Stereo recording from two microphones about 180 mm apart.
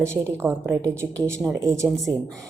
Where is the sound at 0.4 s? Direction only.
10° right (ahead or behind).